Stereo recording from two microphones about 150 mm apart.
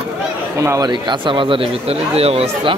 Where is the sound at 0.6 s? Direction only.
25° right (ahead or behind).